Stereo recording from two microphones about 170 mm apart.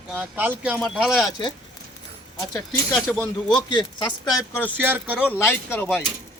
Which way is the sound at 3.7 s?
25° left (ahead or behind).